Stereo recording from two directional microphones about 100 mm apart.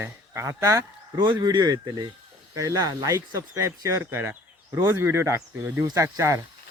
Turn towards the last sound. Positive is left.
turn(degrees=-30)  # may be behind; listen again after turning